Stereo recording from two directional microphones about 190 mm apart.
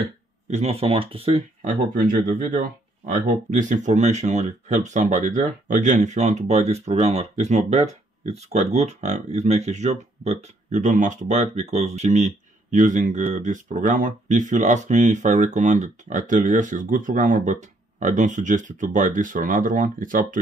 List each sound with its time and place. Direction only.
0.5 s speech: 35° right (ahead or behind)